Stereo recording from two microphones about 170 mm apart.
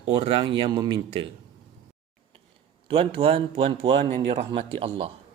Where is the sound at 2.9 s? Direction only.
35° right (ahead or behind).